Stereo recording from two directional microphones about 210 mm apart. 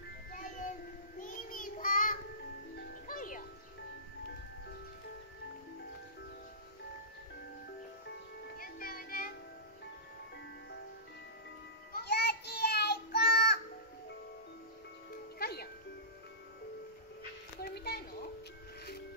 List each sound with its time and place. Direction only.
0.3 s music: 40° left (ahead or behind)
1.2 s child singing: 40° left (ahead or behind)
3.1 s music: 40° left (ahead or behind)
8.5 s music: 45° left (ahead or behind)
11.9 s child singing: 50° left (ahead or behind)
15.3 s music: 50° left (ahead or behind)
17.6 s a sound: 50° left (ahead or behind)